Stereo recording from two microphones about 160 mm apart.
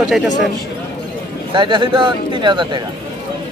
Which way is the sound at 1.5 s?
30° right (ahead or behind).